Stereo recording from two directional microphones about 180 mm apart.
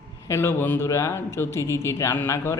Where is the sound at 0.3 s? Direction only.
15° left (ahead or behind).